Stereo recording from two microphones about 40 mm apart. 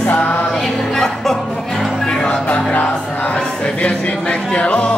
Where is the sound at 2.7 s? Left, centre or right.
Left.